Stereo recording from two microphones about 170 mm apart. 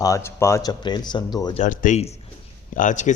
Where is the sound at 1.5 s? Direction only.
45° left (ahead or behind).